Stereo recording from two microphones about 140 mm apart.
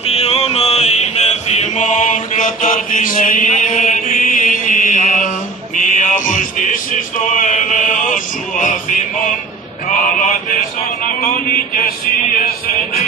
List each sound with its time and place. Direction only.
0.0 s mantra: 50° left (ahead or behind); by 5.3 s 65° left (ahead or behind)
5.8 s music: 65° left (ahead or behind)